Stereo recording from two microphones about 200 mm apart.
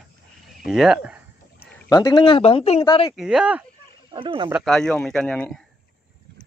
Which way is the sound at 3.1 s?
5° right (ahead or behind).